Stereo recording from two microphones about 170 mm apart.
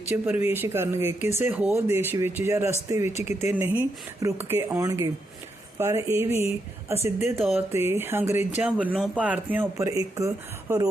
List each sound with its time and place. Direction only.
0.1 s speech: 10° right (ahead or behind)